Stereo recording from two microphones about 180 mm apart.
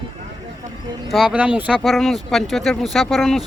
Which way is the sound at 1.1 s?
5° right (ahead or behind).